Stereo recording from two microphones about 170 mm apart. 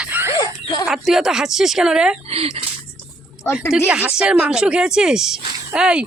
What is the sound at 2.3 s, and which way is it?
Speech, 35° right (ahead or behind).